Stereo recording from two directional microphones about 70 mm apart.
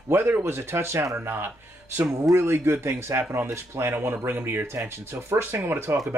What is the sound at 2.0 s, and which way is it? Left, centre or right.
Speech, right.